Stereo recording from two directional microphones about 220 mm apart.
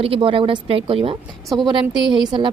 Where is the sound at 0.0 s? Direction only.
25° right (ahead or behind).